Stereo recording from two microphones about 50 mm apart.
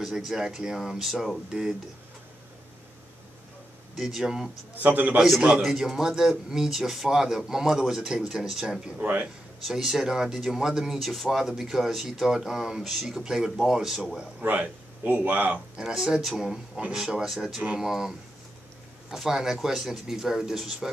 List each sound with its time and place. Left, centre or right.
0.1 s speech: centre
4.0 s speech: centre
4.7 s a man's voice: right
5.6 s speech: centre
9.0 s a man's voice: right
9.7 s speech: centre
14.4 s speech: right
15.8 s speech: centre